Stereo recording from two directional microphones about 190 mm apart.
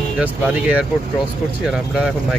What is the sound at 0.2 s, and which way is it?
Speech, 5° right (ahead or behind).